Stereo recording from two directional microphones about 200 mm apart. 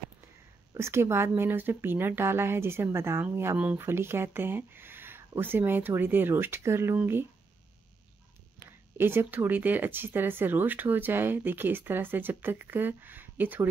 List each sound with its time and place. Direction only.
0.7 s speech: 15° right (ahead or behind)
8.9 s speech: 10° right (ahead or behind)